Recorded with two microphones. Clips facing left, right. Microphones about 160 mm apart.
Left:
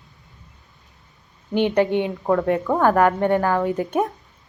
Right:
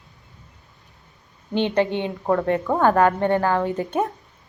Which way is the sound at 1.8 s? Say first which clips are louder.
Left 4 dB; 20° right (ahead or behind).